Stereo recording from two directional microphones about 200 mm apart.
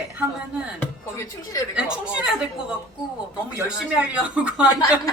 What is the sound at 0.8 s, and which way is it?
Speech, 15° left (ahead or behind).